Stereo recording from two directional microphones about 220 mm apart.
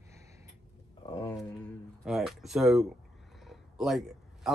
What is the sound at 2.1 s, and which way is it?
A man's voice, centre (ahead or behind).